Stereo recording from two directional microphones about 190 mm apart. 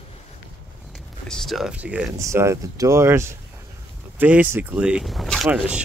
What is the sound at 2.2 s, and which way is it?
Speech, 15° right (ahead or behind).